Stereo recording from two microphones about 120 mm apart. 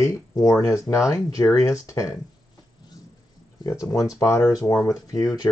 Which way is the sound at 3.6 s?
30° left (ahead or behind).